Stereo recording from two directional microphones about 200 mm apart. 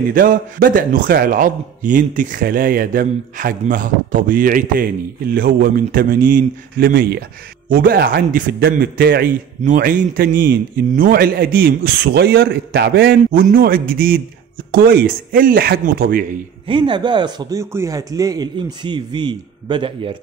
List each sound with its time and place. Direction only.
0.1 s a man's voice: 45° right (ahead or behind)
16.6 s speech: 25° right (ahead or behind)